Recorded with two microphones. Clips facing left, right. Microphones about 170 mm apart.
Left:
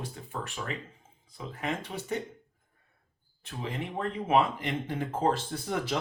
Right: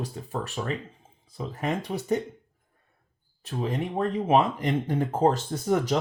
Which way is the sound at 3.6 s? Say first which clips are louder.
Right 6 dB; 40° right (ahead or behind).